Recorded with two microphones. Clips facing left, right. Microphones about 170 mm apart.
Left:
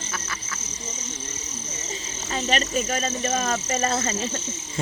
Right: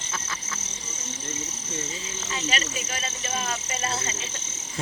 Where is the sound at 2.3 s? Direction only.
40° left (ahead or behind).